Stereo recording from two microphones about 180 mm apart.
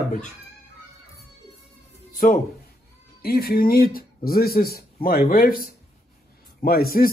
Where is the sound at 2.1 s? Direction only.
50° left (ahead or behind).